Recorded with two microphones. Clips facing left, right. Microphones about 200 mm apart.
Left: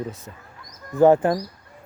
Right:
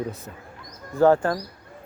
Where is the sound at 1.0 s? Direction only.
20° left (ahead or behind).